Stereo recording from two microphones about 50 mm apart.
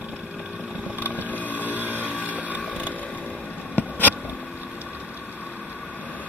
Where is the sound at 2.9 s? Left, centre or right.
Left.